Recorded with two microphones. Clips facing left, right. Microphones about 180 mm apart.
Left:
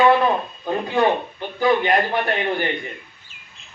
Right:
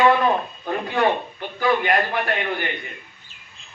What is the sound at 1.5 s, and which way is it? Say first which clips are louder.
A man's voice: left 2 dB; 25° left (ahead or behind).